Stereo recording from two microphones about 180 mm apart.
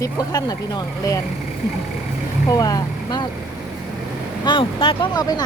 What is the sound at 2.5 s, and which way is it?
Speech, 20° left (ahead or behind).